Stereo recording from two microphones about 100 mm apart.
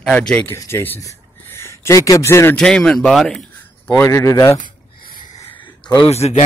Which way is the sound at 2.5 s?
5° left (ahead or behind).